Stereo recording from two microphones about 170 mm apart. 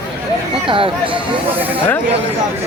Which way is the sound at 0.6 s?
30° right (ahead or behind).